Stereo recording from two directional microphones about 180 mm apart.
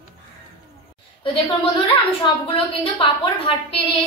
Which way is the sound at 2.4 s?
30° left (ahead or behind).